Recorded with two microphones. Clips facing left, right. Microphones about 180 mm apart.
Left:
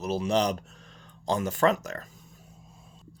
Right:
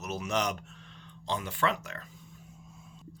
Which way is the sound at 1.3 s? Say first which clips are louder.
Left 7 dB; 45° left (ahead or behind).